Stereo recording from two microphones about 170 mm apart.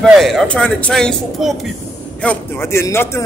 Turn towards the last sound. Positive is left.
turn(degrees=15)  # may be behind; listen again after turning